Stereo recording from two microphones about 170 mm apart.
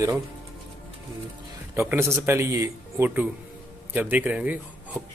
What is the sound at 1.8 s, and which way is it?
Speech, 15° right (ahead or behind).